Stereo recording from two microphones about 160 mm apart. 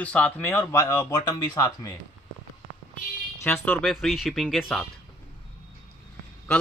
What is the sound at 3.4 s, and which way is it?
Speech, 10° left (ahead or behind).